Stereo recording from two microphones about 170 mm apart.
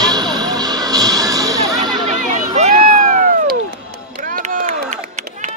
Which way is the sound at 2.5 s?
50° right (ahead or behind).